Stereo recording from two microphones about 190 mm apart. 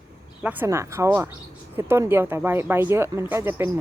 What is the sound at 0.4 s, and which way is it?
Speech, 10° right (ahead or behind).